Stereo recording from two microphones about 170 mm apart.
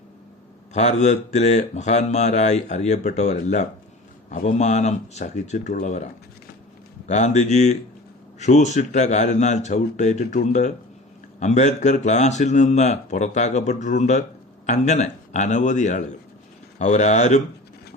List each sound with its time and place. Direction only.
0.7 s speech: 40° left (ahead or behind)
7.1 s speech: 45° left (ahead or behind)